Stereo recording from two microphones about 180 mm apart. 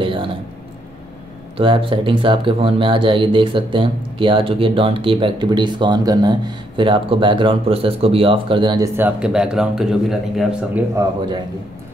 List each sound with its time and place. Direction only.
0.0 s a sound: 30° right (ahead or behind)
1.6 s speech: 30° right (ahead or behind); by 10.8 s centre (ahead or behind)
11.0 s speech: 25° right (ahead or behind)